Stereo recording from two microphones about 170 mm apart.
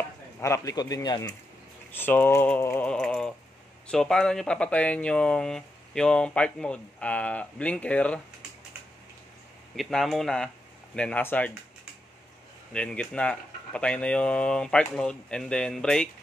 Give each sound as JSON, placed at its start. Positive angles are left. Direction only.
{"t": 0.4, "sound": "speech", "side_deg": 20}
{"t": 1.9, "sound": "speech", "side_deg": 10}
{"t": 9.8, "sound": "speech", "side_deg": 0}
{"t": 12.7, "sound": "speech", "side_deg": 5}